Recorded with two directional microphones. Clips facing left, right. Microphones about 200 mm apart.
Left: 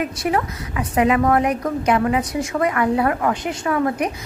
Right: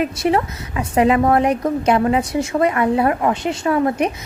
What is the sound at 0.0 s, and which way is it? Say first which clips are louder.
A woman's voice: right 3 dB; 25° right (ahead or behind).